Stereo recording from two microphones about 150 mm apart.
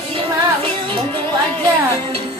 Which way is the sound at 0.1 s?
35° right (ahead or behind).